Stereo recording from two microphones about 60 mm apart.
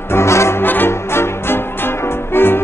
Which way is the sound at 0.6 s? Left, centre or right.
Left.